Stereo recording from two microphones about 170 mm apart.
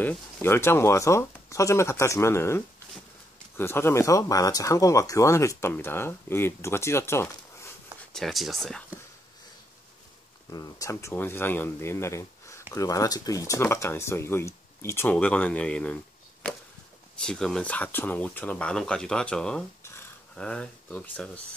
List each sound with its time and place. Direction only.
0.0 s speech: 10° left (ahead or behind)
8.1 s speech: centre (ahead or behind)
10.5 s speech: 20° left (ahead or behind)
17.2 s speech: 5° left (ahead or behind)
19.8 s a sound: 15° left (ahead or behind)
20.3 s speech: 5° left (ahead or behind)